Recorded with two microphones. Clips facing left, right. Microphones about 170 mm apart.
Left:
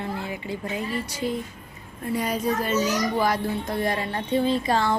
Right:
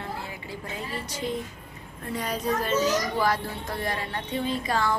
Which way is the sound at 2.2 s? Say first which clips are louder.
Left 2 dB; 10° left (ahead or behind).